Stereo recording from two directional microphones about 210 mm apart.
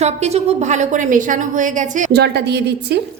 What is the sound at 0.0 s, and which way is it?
A woman's voice, 30° right (ahead or behind).